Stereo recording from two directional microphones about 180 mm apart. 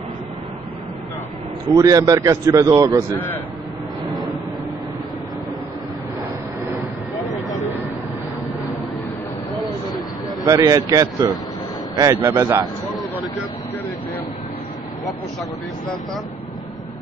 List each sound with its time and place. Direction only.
1.7 s speech: 20° right (ahead or behind)
10.4 s speech: 20° right (ahead or behind)